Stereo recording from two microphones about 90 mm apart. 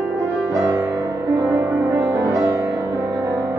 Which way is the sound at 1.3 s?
30° right (ahead or behind).